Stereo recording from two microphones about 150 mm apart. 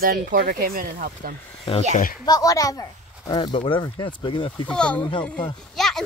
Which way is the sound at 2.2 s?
25° left (ahead or behind).